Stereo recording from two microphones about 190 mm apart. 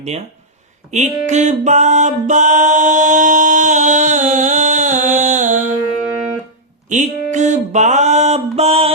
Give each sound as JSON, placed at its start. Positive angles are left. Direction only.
{"t": 0.9, "sound": "music", "side_deg": -40}
{"t": 6.9, "sound": "music", "side_deg": -40}